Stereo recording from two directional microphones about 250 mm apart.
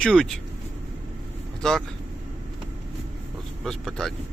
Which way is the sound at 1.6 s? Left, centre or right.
Centre.